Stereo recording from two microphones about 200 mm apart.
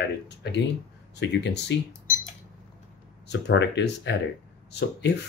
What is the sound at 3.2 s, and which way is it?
Speech, 60° left (ahead or behind).